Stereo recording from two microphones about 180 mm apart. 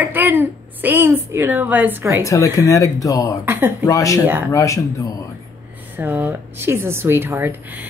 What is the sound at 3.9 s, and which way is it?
Speech, 20° left (ahead or behind).